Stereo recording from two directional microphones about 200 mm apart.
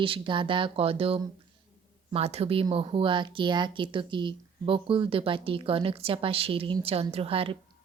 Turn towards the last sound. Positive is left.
turn(degrees=-25)  # may be behind; listen again after turning